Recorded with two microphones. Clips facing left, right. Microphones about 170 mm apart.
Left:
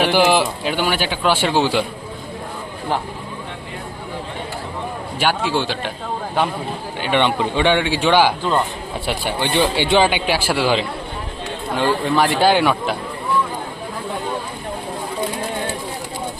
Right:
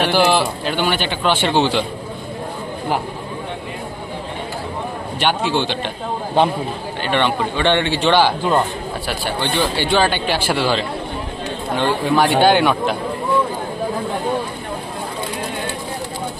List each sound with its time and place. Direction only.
0.0 s speech: 10° left (ahead or behind)
5.2 s a man's voice: 5° left (ahead or behind)
7.0 s speech: 15° left (ahead or behind)
11.7 s a man's voice: centre (ahead or behind)